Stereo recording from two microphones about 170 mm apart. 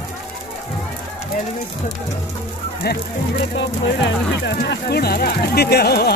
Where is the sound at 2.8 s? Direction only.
70° left (ahead or behind).